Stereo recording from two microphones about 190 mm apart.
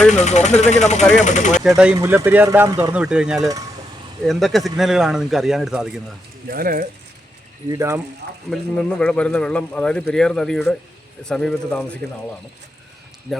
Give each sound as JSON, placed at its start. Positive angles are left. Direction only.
{"t": 0.1, "sound": "speech", "side_deg": 35}
{"t": 1.6, "sound": "speech", "side_deg": -5}
{"t": 2.9, "sound": "speech", "side_deg": -5}
{"t": 6.5, "sound": "speech", "side_deg": -50}
{"t": 7.7, "sound": "speech", "side_deg": -15}
{"t": 8.4, "sound": "speech", "side_deg": 5}
{"t": 13.3, "sound": "speech", "side_deg": 0}